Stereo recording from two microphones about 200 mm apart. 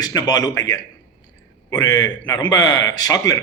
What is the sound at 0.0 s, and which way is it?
A man's voice, 20° left (ahead or behind).